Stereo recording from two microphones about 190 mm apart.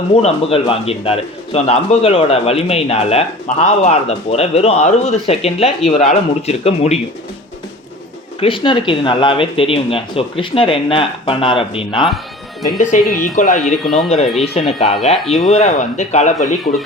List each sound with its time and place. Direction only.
0.1 s speech: 35° left (ahead or behind)
8.4 s speech: 25° left (ahead or behind)
12.8 s speech: 40° left (ahead or behind)
13.8 s speech: centre (ahead or behind)
14.4 s speech: 35° left (ahead or behind)